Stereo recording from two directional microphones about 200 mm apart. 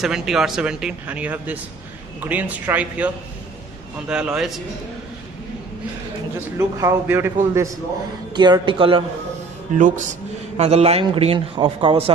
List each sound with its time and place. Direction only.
0.0 s speech: centre (ahead or behind)
4.1 s speech: 5° right (ahead or behind)
6.6 s speech: 15° right (ahead or behind)
8.4 s a man's voice: 25° right (ahead or behind)
9.8 s a man's voice: 40° right (ahead or behind)